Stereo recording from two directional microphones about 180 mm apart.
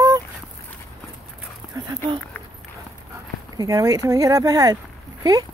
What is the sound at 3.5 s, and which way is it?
Speech, 20° right (ahead or behind).